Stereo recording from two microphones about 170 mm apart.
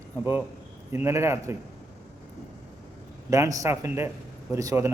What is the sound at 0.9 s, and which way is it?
Speech, 15° right (ahead or behind).